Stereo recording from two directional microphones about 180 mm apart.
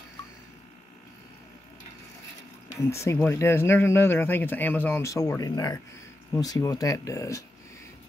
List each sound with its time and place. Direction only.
2.8 s speech: 15° left (ahead or behind)